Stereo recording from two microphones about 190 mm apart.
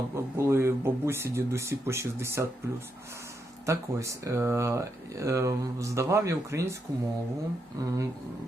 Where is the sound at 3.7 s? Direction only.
15° right (ahead or behind).